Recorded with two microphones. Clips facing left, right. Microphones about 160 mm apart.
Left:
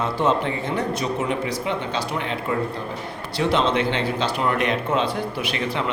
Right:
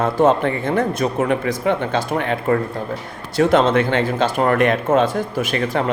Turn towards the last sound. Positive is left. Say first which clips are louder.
# right 5 dB
turn(degrees=-45)  # may be behind; listen again after turning